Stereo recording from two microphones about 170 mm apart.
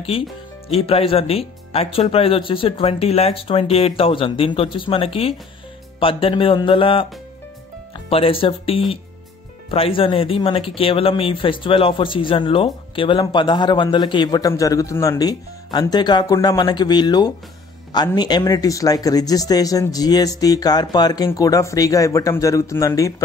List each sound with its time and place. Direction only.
0.7 s speech: 35° left (ahead or behind)
8.1 s speech: 35° left (ahead or behind)